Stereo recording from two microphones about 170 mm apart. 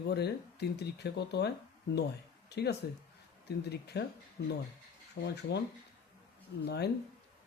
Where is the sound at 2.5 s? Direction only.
75° left (ahead or behind).